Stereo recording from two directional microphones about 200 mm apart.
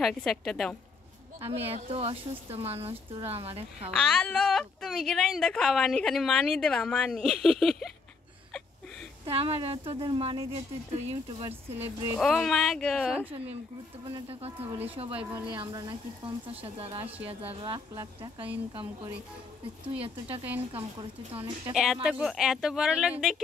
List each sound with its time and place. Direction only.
0.0 s a woman's voice: centre (ahead or behind)
1.4 s speech: 30° right (ahead or behind)
3.9 s a woman's voice: 5° left (ahead or behind)
9.2 s speech: 30° right (ahead or behind)
11.4 s speech: 10° right (ahead or behind)
12.2 s a woman's voice: centre (ahead or behind)
14.0 s speech: 30° right (ahead or behind)
15.1 s speech: 10° right (ahead or behind)
15.4 s speech: 25° right (ahead or behind)
22.0 s a woman's voice: centre (ahead or behind)